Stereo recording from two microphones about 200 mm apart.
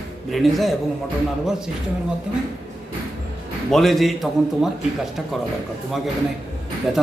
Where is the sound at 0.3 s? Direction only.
Centre (ahead or behind).